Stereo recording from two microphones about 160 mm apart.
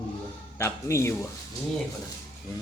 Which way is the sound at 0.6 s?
15° left (ahead or behind).